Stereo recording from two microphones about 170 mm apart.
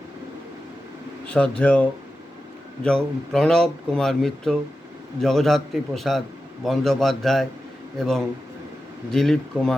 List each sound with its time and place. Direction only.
1.3 s speech: 5° left (ahead or behind)